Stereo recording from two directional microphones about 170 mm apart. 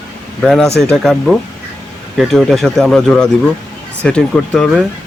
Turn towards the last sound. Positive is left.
turn(degrees=0)  # may be behind; listen again after turning